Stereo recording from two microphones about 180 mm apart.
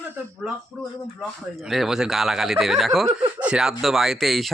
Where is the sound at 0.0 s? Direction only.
10° right (ahead or behind).